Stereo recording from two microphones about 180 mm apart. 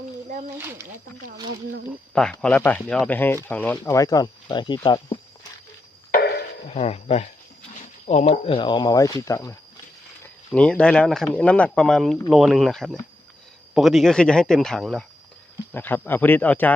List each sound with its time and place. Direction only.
0.6 s speech: 15° right (ahead or behind)
2.4 s speech: 10° left (ahead or behind)
3.8 s speech: 20° left (ahead or behind)
6.7 s speech: 35° left (ahead or behind)
8.3 s speech: 30° left (ahead or behind)
10.2 s speech: 5° left (ahead or behind)